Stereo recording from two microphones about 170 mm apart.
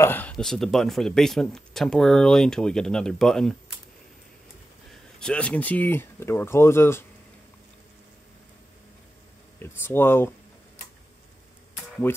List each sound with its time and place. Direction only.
0.0 s speech: 10° left (ahead or behind)
5.2 s speech: 5° left (ahead or behind)
9.6 s speech: 15° left (ahead or behind)
12.1 s speech: 10° left (ahead or behind)